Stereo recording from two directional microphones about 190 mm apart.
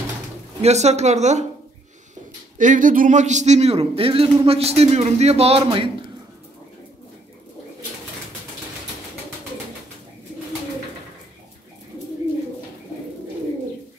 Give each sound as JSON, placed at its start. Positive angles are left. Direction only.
{"t": 0.6, "sound": "a man's voice", "side_deg": -35}
{"t": 2.5, "sound": "a man's voice", "side_deg": -45}